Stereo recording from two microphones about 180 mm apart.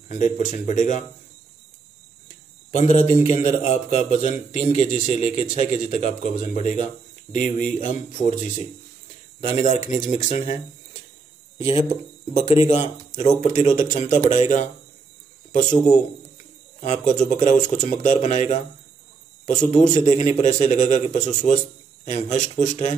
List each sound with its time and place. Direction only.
0.1 s speech: 45° left (ahead or behind)
2.7 s a man's voice: 40° left (ahead or behind)